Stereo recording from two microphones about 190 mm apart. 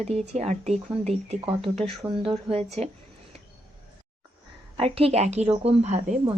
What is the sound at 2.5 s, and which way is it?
Speech, 35° right (ahead or behind).